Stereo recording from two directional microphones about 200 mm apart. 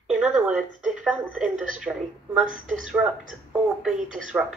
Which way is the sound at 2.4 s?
40° right (ahead or behind).